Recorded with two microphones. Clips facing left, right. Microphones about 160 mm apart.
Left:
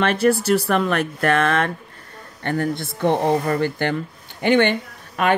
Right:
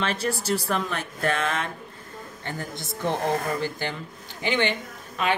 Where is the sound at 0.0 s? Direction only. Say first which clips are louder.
Left 9 dB; 60° left (ahead or behind).